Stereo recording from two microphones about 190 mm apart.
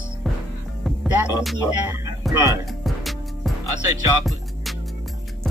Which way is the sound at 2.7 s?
Centre (ahead or behind).